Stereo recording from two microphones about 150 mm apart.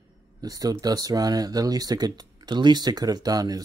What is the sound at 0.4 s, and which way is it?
Speech, 25° right (ahead or behind).